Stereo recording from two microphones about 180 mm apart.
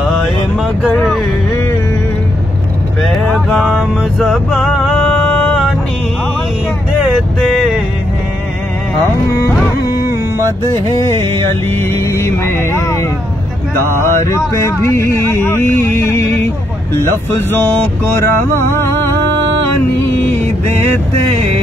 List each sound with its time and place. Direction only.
0.0 s vehicle: centre (ahead or behind)
0.9 s speech: 5° left (ahead or behind)
3.0 s music: centre (ahead or behind)
7.3 s vehicle: centre (ahead or behind)
11.7 s speech: 15° left (ahead or behind)
14.2 s speech: 15° left (ahead or behind)